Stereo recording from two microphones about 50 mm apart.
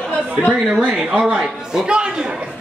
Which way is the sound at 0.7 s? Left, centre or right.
Centre.